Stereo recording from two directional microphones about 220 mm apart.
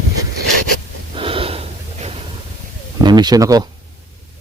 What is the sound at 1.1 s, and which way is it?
Gasp, 25° right (ahead or behind).